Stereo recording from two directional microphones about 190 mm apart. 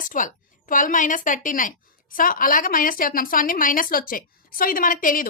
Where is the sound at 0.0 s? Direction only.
45° left (ahead or behind).